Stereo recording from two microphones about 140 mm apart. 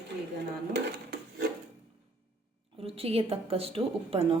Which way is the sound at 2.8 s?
45° right (ahead or behind).